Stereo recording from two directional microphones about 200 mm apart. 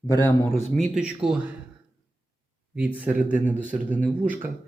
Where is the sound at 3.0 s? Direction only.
5° right (ahead or behind).